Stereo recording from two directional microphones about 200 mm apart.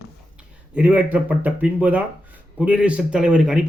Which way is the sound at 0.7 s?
5° right (ahead or behind).